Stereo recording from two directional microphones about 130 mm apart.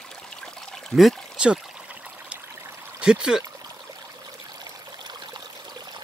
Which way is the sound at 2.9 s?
5° right (ahead or behind).